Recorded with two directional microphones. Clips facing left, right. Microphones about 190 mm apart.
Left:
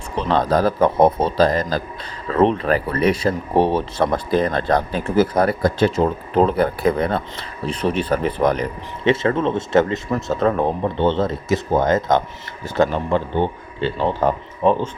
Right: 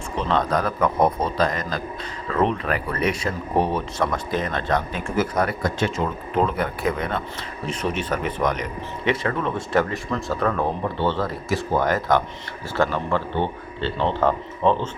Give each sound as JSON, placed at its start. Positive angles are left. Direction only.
{"t": 0.3, "sound": "speech", "side_deg": 35}